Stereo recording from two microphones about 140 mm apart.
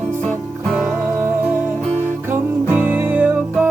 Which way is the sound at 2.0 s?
15° right (ahead or behind).